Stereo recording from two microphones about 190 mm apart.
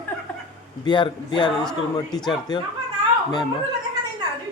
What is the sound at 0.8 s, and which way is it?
Speech, 25° left (ahead or behind).